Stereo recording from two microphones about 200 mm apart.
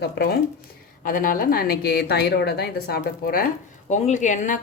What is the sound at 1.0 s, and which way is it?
A woman's voice, 45° left (ahead or behind).